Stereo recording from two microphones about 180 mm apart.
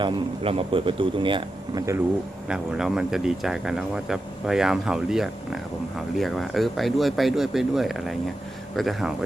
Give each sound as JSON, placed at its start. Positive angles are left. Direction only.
{"t": 0.0, "sound": "speech", "side_deg": -30}
{"t": 2.5, "sound": "speech", "side_deg": -5}